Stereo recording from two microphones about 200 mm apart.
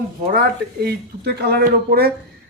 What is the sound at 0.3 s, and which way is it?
Speech, 50° right (ahead or behind).